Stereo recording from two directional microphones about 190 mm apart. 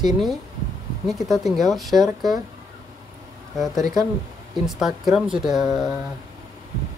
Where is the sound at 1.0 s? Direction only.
Centre (ahead or behind).